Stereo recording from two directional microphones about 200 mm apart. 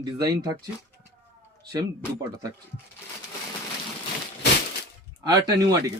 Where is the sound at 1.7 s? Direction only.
15° right (ahead or behind).